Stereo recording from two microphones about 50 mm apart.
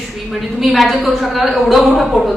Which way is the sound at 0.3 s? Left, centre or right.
Centre.